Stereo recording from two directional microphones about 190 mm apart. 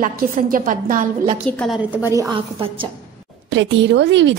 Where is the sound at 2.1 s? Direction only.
15° right (ahead or behind).